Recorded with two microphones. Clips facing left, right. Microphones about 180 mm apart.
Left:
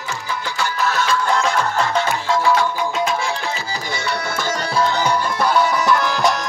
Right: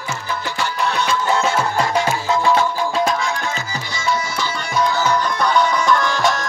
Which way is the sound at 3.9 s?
65° left (ahead or behind).